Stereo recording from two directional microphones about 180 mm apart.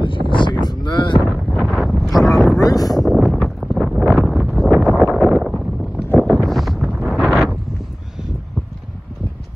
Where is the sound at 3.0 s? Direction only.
Centre (ahead or behind).